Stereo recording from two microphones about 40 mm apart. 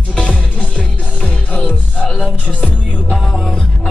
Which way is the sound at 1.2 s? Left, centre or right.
Left.